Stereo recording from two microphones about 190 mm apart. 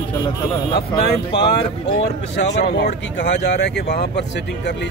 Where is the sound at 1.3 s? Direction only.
65° left (ahead or behind).